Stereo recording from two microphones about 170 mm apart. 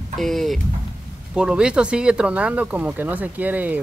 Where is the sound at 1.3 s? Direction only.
5° right (ahead or behind).